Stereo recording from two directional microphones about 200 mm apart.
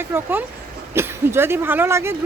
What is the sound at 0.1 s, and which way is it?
Speech, 10° right (ahead or behind).